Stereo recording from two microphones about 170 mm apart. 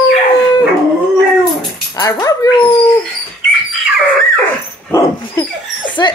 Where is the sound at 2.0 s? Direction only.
20° left (ahead or behind).